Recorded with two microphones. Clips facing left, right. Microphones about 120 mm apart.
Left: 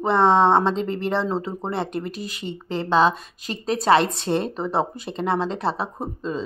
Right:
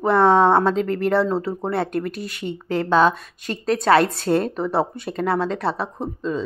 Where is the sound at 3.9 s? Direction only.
25° left (ahead or behind).